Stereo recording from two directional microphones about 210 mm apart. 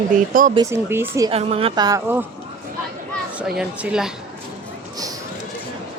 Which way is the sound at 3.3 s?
5° right (ahead or behind).